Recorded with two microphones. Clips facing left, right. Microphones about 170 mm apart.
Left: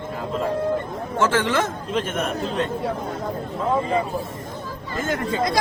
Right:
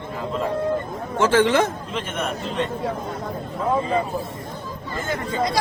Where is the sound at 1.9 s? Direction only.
45° left (ahead or behind).